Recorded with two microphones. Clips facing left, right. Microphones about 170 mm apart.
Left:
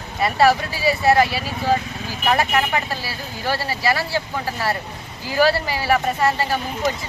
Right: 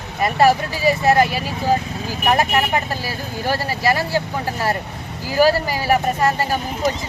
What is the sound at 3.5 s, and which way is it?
Speech, 45° right (ahead or behind).